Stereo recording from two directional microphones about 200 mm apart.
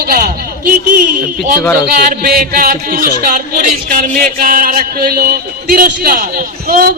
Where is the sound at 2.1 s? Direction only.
45° right (ahead or behind).